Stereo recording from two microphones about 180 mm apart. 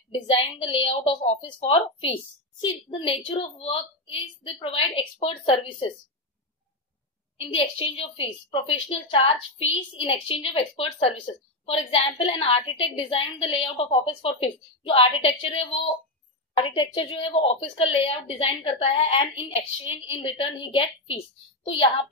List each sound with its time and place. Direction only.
0.1 s a woman's voice: 30° left (ahead or behind)
7.3 s a woman's voice: 30° left (ahead or behind)